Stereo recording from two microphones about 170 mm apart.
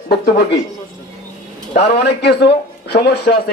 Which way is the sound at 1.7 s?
75° left (ahead or behind).